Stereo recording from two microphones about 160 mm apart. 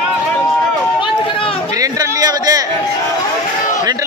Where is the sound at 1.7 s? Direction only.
20° right (ahead or behind).